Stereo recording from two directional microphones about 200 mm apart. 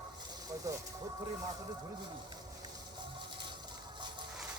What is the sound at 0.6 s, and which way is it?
Speech, 15° right (ahead or behind).